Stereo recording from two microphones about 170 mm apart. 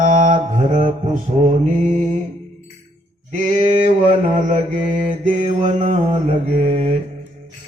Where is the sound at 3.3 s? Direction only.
45° right (ahead or behind).